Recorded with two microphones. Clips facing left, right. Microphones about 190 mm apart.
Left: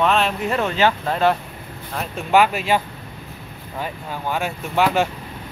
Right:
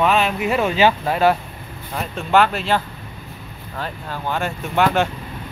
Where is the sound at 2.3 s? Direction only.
10° left (ahead or behind).